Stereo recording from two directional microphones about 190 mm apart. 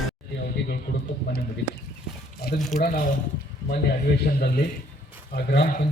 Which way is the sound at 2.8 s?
45° left (ahead or behind).